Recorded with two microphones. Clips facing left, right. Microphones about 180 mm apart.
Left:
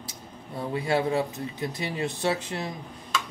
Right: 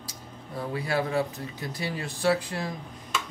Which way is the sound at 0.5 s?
25° left (ahead or behind).